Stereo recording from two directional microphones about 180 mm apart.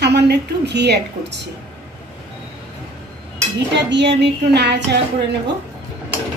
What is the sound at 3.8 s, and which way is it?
A woman's voice, 75° right (ahead or behind).